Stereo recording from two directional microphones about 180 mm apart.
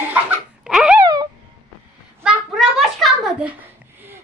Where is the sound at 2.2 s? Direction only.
Centre (ahead or behind).